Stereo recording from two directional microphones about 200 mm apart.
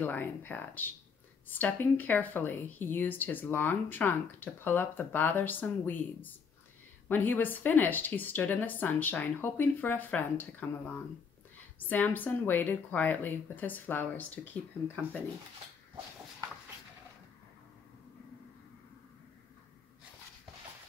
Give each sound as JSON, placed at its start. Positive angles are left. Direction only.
{"t": 0.0, "sound": "speech", "side_deg": 10}